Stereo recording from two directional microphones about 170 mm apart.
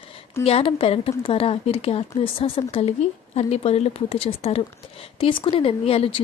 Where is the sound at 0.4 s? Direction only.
35° left (ahead or behind).